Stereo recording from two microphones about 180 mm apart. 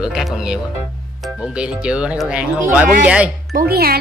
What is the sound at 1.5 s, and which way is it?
Speech, 5° right (ahead or behind).